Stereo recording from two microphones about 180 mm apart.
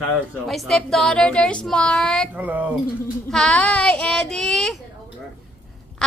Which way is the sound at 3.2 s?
5° left (ahead or behind).